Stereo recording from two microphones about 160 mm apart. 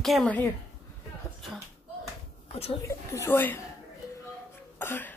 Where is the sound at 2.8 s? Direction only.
15° left (ahead or behind).